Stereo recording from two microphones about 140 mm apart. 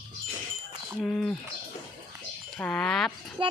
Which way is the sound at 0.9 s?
5° left (ahead or behind).